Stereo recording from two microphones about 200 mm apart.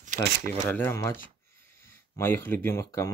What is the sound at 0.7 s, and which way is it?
Speech, 10° left (ahead or behind).